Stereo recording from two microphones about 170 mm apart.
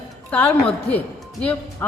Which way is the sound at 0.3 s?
10° left (ahead or behind).